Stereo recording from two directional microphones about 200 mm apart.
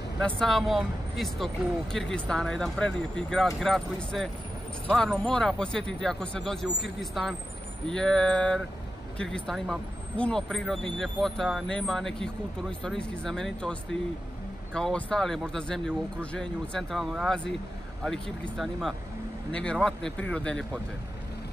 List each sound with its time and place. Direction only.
0.2 s speech: 5° left (ahead or behind)